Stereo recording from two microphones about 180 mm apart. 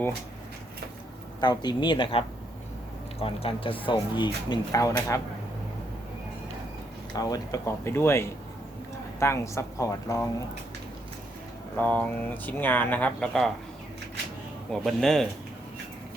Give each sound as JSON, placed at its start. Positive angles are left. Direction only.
{"t": 1.4, "sound": "speech", "side_deg": 25}
{"t": 7.2, "sound": "speech", "side_deg": 20}
{"t": 11.8, "sound": "speech", "side_deg": 10}
{"t": 14.7, "sound": "speech", "side_deg": 0}